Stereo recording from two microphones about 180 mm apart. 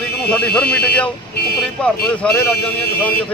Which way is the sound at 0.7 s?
60° left (ahead or behind).